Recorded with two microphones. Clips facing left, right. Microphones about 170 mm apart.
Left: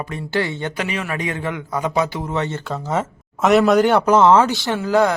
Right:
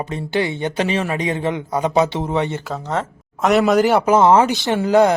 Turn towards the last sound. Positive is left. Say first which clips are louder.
# right 3 dB
turn(degrees=-20)  # may be behind; listen again after turning